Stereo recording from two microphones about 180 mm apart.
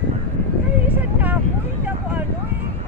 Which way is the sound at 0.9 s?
10° right (ahead or behind).